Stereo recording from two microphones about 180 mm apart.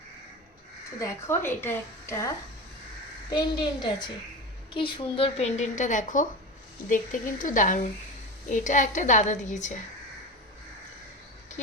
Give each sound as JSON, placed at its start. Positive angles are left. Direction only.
{"t": 0.9, "sound": "a woman's voice", "side_deg": 15}